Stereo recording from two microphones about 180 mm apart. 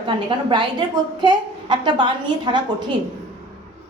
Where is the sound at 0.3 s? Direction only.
25° right (ahead or behind).